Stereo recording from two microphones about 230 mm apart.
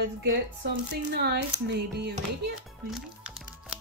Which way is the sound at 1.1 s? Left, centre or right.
Right.